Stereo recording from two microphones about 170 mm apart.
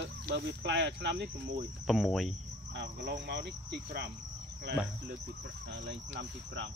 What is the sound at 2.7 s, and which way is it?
Speech, 70° right (ahead or behind).